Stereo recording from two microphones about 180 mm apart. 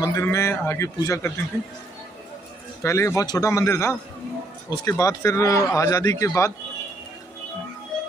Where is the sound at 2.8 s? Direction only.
15° left (ahead or behind).